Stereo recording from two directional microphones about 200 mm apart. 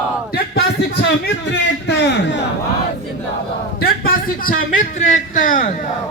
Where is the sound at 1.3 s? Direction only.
60° left (ahead or behind).